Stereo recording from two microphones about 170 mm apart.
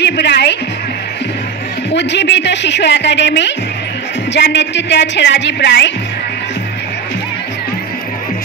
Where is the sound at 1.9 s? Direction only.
90° left.